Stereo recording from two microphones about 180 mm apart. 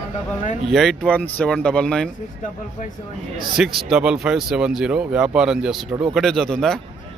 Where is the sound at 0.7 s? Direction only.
Centre (ahead or behind).